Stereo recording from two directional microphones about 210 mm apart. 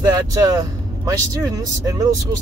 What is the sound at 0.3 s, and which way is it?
Speech, 15° right (ahead or behind).